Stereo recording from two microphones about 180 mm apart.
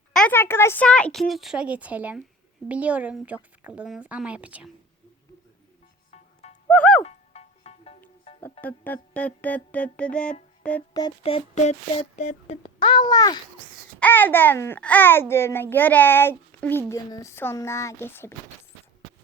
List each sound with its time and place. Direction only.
0.1 s speech: 5° left (ahead or behind)
6.1 s music: 40° left (ahead or behind)
6.7 s music: 5° left (ahead or behind)
7.0 s music: 35° left (ahead or behind)
8.6 s a child's voice: 10° left (ahead or behind)
11.2 s speech: 30° left (ahead or behind)
12.8 s a child's voice: 25° left (ahead or behind)
14.0 s a child's voice: 10° left (ahead or behind)